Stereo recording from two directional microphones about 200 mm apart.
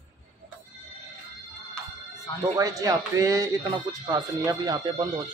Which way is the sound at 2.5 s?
15° right (ahead or behind).